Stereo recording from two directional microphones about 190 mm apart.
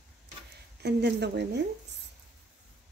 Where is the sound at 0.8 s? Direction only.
60° right (ahead or behind).